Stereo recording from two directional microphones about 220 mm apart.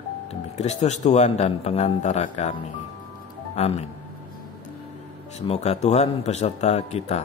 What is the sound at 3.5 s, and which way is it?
Speech, 30° left (ahead or behind).